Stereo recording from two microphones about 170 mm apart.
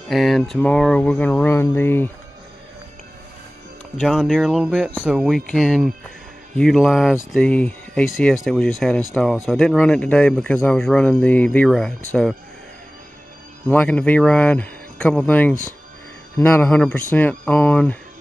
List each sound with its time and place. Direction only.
0.1 s speech: centre (ahead or behind)
3.9 s speech: centre (ahead or behind)
13.7 s speech: 10° left (ahead or behind)